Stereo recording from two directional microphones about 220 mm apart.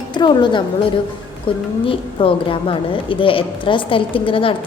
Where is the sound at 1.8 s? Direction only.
25° left (ahead or behind).